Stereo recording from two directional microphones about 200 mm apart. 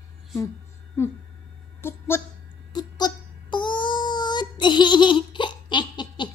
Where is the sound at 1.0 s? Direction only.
15° left (ahead or behind).